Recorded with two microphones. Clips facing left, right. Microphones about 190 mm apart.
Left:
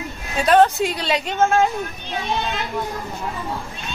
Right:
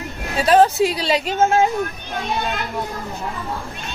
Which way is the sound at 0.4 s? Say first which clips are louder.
Right 1 dB; centre (ahead or behind).